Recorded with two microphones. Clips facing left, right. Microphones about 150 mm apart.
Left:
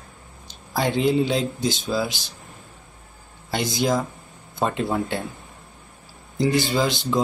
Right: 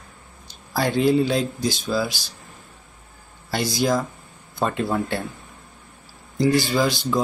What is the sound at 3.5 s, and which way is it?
Speech, 20° left (ahead or behind).